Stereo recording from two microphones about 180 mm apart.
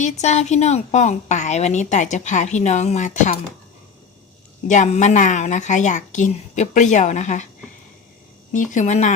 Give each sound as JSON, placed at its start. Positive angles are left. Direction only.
{"t": 0.0, "sound": "a woman's voice", "side_deg": 40}
{"t": 4.7, "sound": "a woman's voice", "side_deg": 40}
{"t": 8.5, "sound": "a woman's voice", "side_deg": 45}